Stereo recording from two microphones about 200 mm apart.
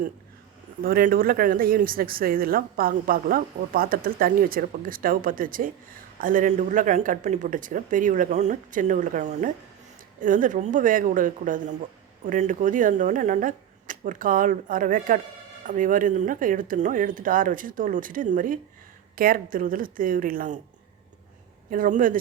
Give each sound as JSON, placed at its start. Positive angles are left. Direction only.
{"t": 0.8, "sound": "speech", "side_deg": -45}
{"t": 21.7, "sound": "speech", "side_deg": -40}